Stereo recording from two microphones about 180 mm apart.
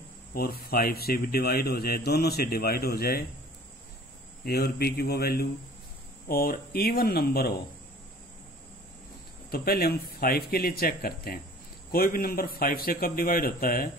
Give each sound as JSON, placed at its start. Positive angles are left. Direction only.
{"t": 0.3, "sound": "speech", "side_deg": 55}
{"t": 4.5, "sound": "speech", "side_deg": 60}
{"t": 9.5, "sound": "a man's voice", "side_deg": 60}